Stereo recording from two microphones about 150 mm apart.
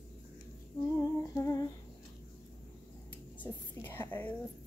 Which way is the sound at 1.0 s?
20° left (ahead or behind).